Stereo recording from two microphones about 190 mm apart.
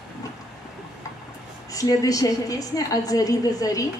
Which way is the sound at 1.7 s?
20° left (ahead or behind).